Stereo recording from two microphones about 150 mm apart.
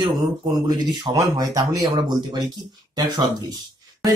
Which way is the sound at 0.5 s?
25° right (ahead or behind).